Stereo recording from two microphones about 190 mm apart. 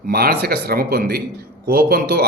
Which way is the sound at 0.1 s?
55° right (ahead or behind).